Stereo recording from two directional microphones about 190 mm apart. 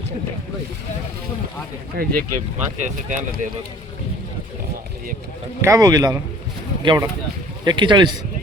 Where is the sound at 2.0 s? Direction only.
50° right (ahead or behind).